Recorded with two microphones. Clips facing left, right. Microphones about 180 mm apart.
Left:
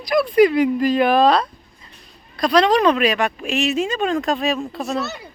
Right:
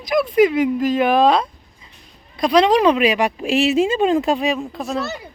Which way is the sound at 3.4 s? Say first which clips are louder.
Right 6 dB; 30° right (ahead or behind).